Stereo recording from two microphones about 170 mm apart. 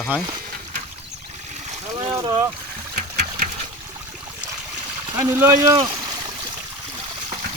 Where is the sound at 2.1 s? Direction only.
20° right (ahead or behind).